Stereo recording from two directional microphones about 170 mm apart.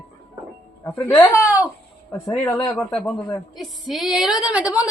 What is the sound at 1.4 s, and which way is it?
Speech, 5° right (ahead or behind).